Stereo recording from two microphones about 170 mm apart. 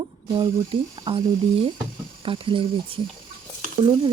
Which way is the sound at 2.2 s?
30° right (ahead or behind).